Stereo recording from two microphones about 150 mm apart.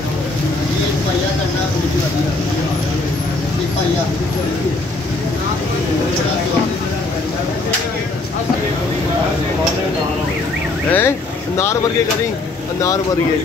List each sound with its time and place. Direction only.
10.9 s speech: 15° left (ahead or behind)